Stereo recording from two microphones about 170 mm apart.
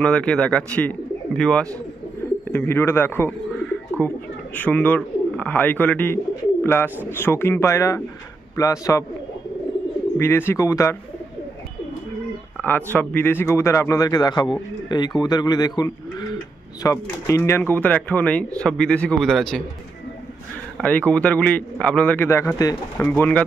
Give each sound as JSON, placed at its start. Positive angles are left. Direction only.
{"t": 0.0, "sound": "speech", "side_deg": 5}
{"t": 4.6, "sound": "speech", "side_deg": 10}
{"t": 10.1, "sound": "speech", "side_deg": 15}
{"t": 12.6, "sound": "speech", "side_deg": 10}
{"t": 20.7, "sound": "speech", "side_deg": 10}